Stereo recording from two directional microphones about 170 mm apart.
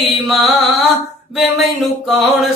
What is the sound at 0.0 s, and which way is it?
Music, centre (ahead or behind).